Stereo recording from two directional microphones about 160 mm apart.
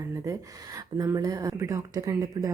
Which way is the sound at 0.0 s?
20° right (ahead or behind).